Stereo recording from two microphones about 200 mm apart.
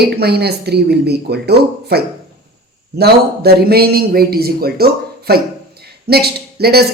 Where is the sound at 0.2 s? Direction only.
55° right (ahead or behind).